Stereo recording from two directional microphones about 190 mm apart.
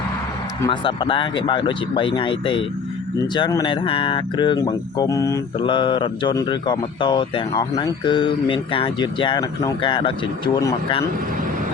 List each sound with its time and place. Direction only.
0.7 s speech: 25° left (ahead or behind)